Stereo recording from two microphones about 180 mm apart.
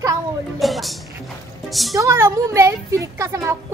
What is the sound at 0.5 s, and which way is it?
Music, centre (ahead or behind).